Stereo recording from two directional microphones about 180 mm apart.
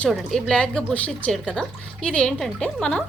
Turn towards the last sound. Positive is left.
turn(degrees=5)  # may be behind; listen again after turning